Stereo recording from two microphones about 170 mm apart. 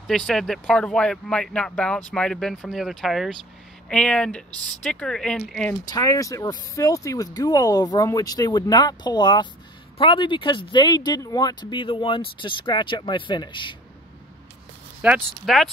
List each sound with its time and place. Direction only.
0.0 s speech: centre (ahead or behind)
5.7 s speech: 20° left (ahead or behind)
15.0 s speech: 10° right (ahead or behind)
15.4 s speech: centre (ahead or behind)